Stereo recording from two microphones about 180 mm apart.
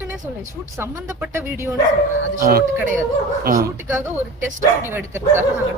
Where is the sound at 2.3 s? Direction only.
55° right (ahead or behind).